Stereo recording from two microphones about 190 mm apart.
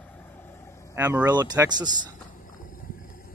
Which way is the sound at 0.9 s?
10° right (ahead or behind).